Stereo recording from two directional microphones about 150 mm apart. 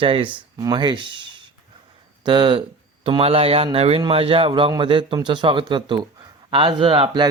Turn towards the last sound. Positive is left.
turn(degrees=-35)  # may be behind; listen again after turning